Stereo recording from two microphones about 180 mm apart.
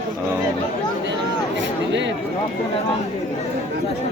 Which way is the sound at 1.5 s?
85° right.